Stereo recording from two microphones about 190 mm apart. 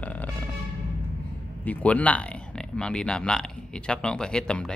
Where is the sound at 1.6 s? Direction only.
10° left (ahead or behind).